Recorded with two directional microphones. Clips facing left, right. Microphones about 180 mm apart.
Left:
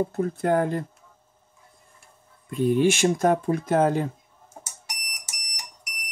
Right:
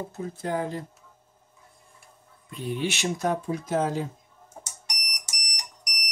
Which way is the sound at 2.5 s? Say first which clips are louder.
Left 9 dB; 50° left (ahead or behind).